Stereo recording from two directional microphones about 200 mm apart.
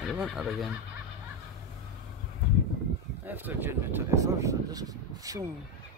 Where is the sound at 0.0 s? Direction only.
Centre (ahead or behind).